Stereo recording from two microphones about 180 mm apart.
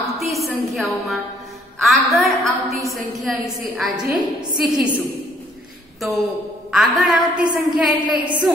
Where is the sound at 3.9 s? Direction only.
25° right (ahead or behind).